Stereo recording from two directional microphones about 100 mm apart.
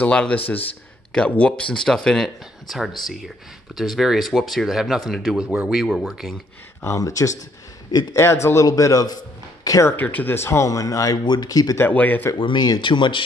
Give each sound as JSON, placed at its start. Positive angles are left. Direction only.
{"t": 0.0, "sound": "speech", "side_deg": 10}
{"t": 6.8, "sound": "a man's voice", "side_deg": 30}
{"t": 8.2, "sound": "a man's voice", "side_deg": 25}
{"t": 9.9, "sound": "a man's voice", "side_deg": 15}
{"t": 11.8, "sound": "speech", "side_deg": 15}
{"t": 12.4, "sound": "speech", "side_deg": 55}